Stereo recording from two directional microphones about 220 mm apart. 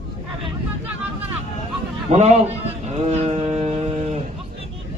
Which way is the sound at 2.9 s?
30° right (ahead or behind).